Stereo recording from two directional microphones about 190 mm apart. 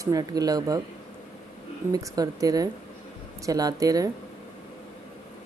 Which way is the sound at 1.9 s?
20° right (ahead or behind).